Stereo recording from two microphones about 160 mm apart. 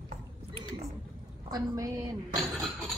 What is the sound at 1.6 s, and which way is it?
Speech, 20° right (ahead or behind).